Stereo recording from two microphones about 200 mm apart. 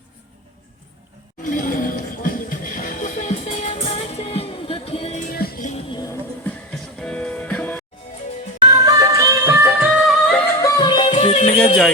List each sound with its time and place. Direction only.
1.5 s music: 45° left (ahead or behind)
5.3 s music: 50° left (ahead or behind)
7.0 s music: 5° left (ahead or behind)
8.6 s music: 20° right (ahead or behind); by 10.4 s centre (ahead or behind)
10.6 s music: 20° left (ahead or behind)
11.1 s music: 35° left (ahead or behind)